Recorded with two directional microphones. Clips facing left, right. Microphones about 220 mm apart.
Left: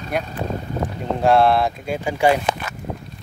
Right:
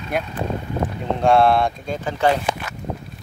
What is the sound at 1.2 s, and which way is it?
Speech, centre (ahead or behind).